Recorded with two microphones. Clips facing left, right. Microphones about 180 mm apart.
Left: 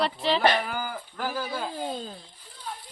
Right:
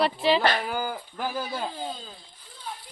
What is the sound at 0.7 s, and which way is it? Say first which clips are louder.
Speech: right 2 dB; 15° right (ahead or behind).